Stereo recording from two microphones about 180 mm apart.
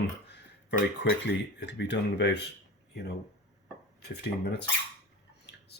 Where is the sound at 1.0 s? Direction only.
75° left (ahead or behind).